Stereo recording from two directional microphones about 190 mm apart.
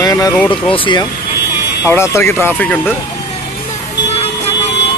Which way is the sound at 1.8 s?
15° left (ahead or behind).